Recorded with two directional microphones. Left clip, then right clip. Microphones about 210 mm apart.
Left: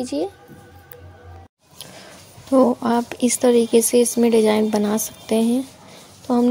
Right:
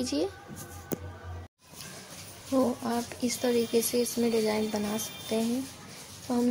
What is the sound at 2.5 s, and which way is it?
A woman's voice, 40° left (ahead or behind).